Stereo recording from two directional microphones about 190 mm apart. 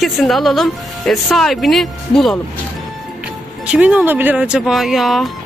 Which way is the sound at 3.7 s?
5° right (ahead or behind).